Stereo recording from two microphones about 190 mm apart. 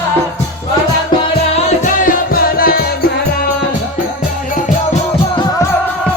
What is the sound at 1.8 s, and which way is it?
Music, 50° left (ahead or behind).